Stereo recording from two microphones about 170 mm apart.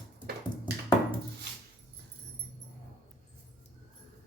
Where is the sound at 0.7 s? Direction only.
75° right (ahead or behind).